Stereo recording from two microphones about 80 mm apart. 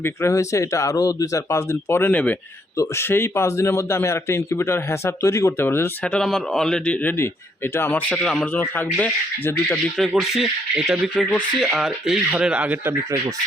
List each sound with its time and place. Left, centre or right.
0.0 s speech: left; by 2.4 s centre
2.7 s speech: left
3.0 s speech: left
5.5 s speech: left
6.0 s speech: centre
8.1 s speech: centre
8.5 s speech: left
9.5 s speech: left
10.2 s speech: centre
12.4 s speech: centre